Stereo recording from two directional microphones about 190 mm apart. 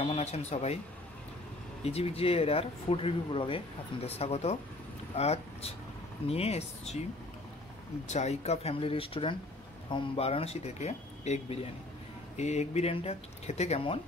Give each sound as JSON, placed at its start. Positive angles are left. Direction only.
{"t": 0.0, "sound": "speech", "side_deg": 35}
{"t": 1.8, "sound": "speech", "side_deg": 30}
{"t": 8.1, "sound": "speech", "side_deg": 35}